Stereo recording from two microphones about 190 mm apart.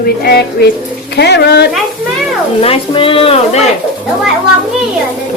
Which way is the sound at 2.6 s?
30° left (ahead or behind).